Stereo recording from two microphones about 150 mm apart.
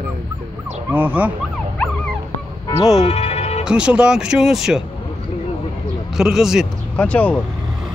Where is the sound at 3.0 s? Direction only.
45° left (ahead or behind).